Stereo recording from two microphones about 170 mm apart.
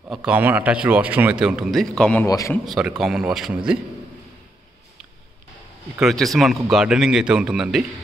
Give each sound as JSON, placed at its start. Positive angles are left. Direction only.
{"t": 0.1, "sound": "a man's voice", "side_deg": -5}
{"t": 2.2, "sound": "a man's voice", "side_deg": 20}
{"t": 2.5, "sound": "a man's voice", "side_deg": 0}
{"t": 5.9, "sound": "a man's voice", "side_deg": 0}